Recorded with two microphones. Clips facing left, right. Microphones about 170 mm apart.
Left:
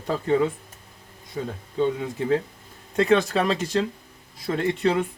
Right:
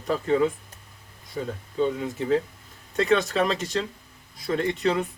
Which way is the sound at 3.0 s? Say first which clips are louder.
Left 2 dB; 30° left (ahead or behind).